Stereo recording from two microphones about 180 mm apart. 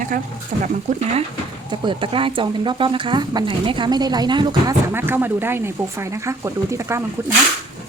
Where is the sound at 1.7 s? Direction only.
25° right (ahead or behind).